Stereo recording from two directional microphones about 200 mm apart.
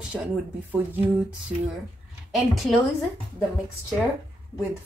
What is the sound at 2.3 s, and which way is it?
Speech, centre (ahead or behind).